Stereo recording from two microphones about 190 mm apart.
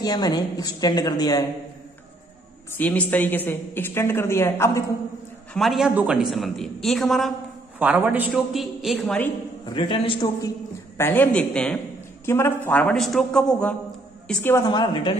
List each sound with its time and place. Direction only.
0.0 s a woman's voice: 20° left (ahead or behind)
2.7 s a woman's voice: 10° left (ahead or behind)
5.5 s a woman's voice: centre (ahead or behind)
9.8 s a woman's voice: 25° left (ahead or behind)
11.0 s a woman's voice: 10° left (ahead or behind)